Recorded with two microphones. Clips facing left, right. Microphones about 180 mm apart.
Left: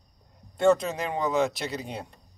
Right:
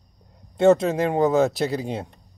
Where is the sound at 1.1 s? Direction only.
40° right (ahead or behind).